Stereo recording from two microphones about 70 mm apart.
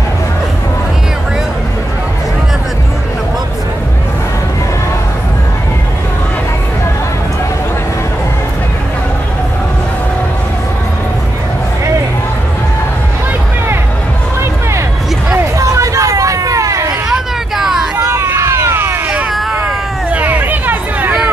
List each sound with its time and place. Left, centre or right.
15.5 s hubbub: right
17.1 s vehicle: centre
17.9 s vehicle: right
19.5 s hubbub: right